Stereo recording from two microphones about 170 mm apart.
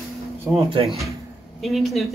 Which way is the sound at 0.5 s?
30° right (ahead or behind).